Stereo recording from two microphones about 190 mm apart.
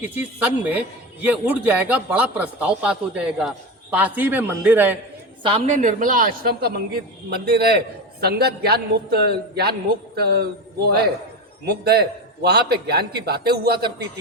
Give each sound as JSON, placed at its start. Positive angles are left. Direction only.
{"t": 0.0, "sound": "a man's voice", "side_deg": -10}
{"t": 5.4, "sound": "a woman's voice", "side_deg": -30}